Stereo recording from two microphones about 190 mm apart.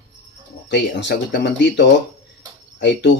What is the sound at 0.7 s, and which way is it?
Speech, 65° left (ahead or behind).